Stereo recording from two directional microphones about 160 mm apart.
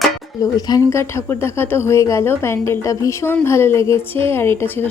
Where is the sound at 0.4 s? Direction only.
20° left (ahead or behind).